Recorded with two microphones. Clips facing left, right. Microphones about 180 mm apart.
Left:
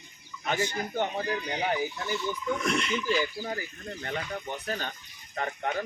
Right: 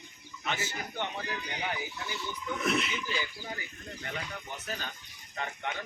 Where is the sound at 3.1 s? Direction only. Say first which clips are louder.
Left 8 dB; 45° left (ahead or behind).